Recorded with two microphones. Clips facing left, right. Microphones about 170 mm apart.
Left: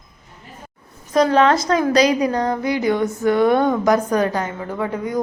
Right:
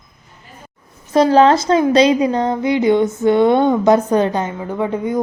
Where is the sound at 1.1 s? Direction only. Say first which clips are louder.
Right 4 dB; 30° right (ahead or behind).